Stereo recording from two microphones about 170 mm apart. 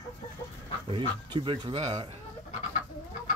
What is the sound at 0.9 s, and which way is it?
Speech, 30° right (ahead or behind).